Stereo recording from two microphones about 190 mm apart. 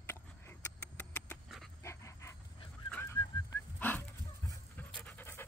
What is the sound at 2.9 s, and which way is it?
Goose, 10° left (ahead or behind).